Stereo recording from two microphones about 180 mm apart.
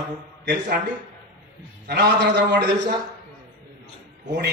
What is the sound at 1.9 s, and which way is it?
A man's voice, 70° right (ahead or behind).